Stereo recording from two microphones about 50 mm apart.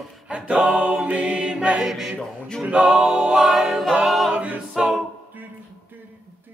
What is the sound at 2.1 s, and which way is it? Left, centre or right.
Speech, centre.